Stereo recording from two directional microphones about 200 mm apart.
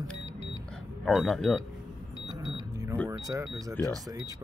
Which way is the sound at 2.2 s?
20° right (ahead or behind).